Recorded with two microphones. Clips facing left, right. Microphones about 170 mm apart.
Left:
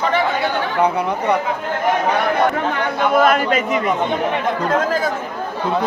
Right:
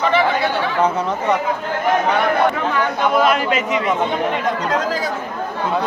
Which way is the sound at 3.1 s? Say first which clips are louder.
Left 3 dB; 45° left (ahead or behind).